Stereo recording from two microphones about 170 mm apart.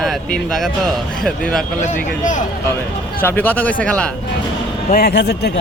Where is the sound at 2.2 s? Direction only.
50° left (ahead or behind).